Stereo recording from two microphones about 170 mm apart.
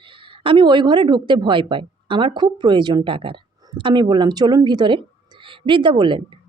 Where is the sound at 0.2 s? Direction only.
30° right (ahead or behind).